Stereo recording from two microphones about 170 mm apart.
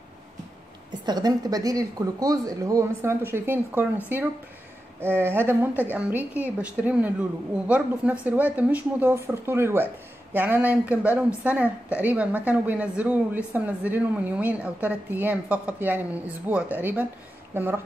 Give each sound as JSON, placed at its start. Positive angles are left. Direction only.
{"t": 1.0, "sound": "a woman's voice", "side_deg": -25}